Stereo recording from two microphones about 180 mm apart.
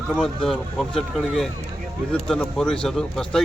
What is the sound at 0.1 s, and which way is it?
A man's voice, centre (ahead or behind).